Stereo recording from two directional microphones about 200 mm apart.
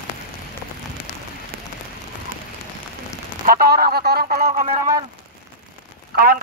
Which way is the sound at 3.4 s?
50° right (ahead or behind).